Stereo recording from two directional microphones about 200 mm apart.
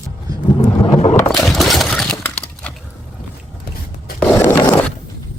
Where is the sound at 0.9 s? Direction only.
35° left (ahead or behind).